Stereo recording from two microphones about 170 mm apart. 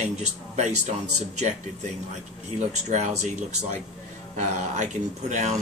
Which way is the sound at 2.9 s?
45° right (ahead or behind).